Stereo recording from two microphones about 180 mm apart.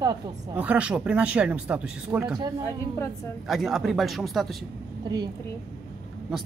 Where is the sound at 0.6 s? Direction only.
5° right (ahead or behind).